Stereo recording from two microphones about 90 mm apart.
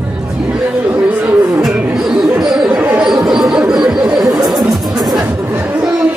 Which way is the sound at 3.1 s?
5° right (ahead or behind).